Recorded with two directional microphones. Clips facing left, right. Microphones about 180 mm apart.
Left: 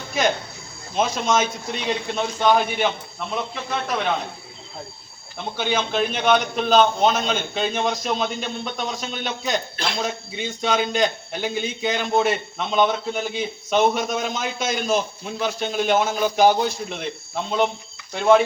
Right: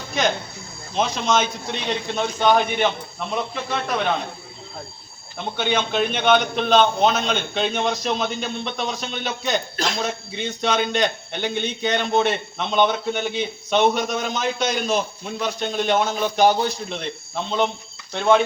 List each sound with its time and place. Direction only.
0.9 s a man's voice: centre (ahead or behind)
5.5 s a man's voice: 5° left (ahead or behind)
9.7 s a man's voice: 40° right (ahead or behind)
10.0 s a man's voice: centre (ahead or behind)
18.1 s a man's voice: 5° left (ahead or behind)